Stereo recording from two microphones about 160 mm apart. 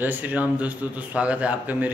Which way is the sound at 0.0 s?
10° right (ahead or behind).